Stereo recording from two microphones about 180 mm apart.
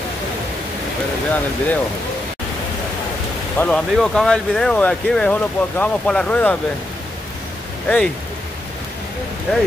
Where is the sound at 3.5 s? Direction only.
5° left (ahead or behind).